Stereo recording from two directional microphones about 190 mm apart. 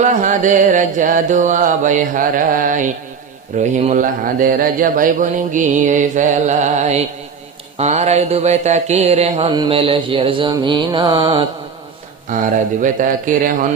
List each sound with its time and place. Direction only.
0.0 s mantra: 40° right (ahead or behind)
3.5 s speech: 40° right (ahead or behind)
9.6 s mantra: 30° right (ahead or behind)
12.3 s mantra: 40° right (ahead or behind)